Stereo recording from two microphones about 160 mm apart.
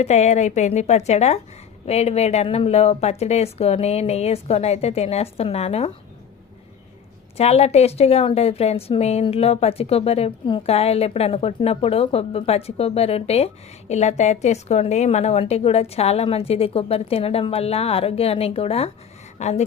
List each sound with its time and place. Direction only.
0.0 s a woman's voice: 45° left (ahead or behind)
7.3 s a woman's voice: 40° left (ahead or behind)